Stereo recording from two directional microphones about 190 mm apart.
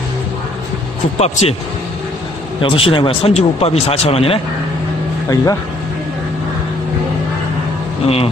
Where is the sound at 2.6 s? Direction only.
30° left (ahead or behind).